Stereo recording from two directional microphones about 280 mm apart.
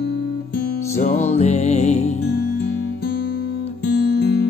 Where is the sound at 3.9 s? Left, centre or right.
Left.